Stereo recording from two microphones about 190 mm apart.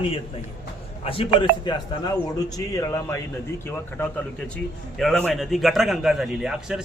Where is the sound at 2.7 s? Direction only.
15° left (ahead or behind).